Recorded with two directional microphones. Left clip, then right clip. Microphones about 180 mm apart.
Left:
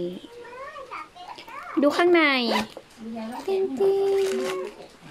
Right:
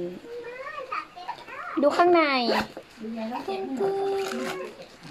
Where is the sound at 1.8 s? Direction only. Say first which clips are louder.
Even; 40° left (ahead or behind).